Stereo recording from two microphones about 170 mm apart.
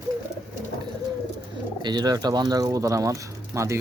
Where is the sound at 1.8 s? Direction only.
25° right (ahead or behind).